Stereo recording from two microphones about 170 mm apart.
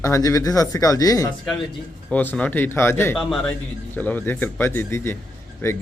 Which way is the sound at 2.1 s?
10° left (ahead or behind).